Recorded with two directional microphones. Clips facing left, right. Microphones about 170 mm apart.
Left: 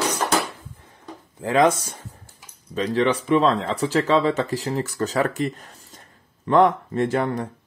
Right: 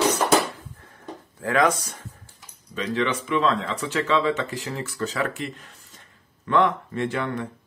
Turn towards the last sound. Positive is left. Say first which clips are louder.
# left 4 dB
turn(degrees=40)  # may be behind; listen again after turning